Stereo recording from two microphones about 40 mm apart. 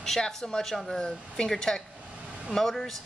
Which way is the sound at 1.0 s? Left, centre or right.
Centre.